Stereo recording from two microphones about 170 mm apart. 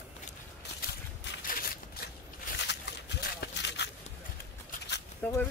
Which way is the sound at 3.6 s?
80° left.